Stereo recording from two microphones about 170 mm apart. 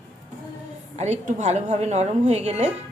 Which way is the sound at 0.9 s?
40° right (ahead or behind).